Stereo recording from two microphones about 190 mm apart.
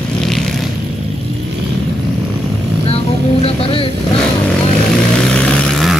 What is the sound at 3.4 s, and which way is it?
Vehicle, 30° left (ahead or behind).